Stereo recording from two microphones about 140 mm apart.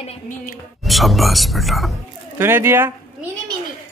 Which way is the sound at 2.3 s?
20° right (ahead or behind).